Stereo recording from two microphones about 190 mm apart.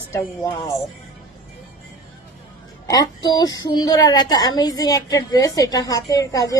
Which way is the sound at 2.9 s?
20° left (ahead or behind).